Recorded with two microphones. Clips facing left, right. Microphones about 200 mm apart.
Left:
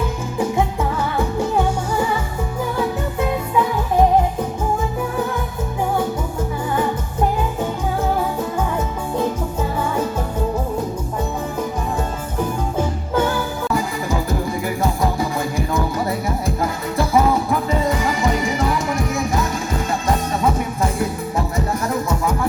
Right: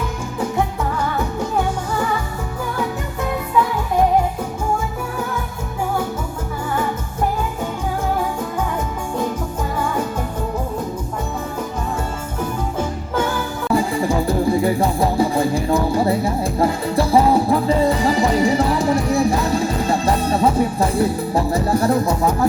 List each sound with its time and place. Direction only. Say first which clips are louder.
13.7 s music: right 7 dB; 30° right (ahead or behind)